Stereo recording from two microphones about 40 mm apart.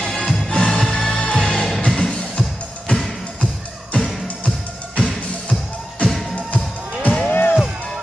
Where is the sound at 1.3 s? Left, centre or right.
Centre.